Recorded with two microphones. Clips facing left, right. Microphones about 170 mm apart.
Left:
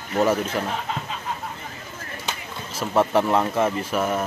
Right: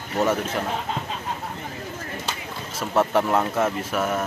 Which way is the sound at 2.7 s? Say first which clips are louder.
Left 1 dB; centre (ahead or behind).